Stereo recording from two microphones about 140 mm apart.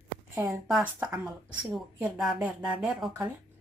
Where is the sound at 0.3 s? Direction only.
25° right (ahead or behind).